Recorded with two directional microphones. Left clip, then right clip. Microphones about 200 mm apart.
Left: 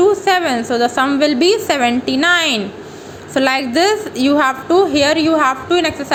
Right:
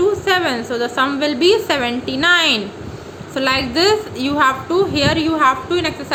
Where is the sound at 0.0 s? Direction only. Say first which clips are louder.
Left 3 dB; 25° left (ahead or behind).